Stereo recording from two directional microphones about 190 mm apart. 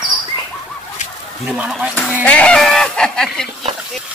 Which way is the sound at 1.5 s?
Centre (ahead or behind).